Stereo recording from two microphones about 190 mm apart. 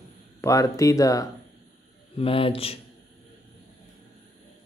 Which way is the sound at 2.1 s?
30° left (ahead or behind).